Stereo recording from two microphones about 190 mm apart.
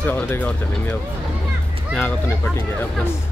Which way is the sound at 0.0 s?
10° left (ahead or behind).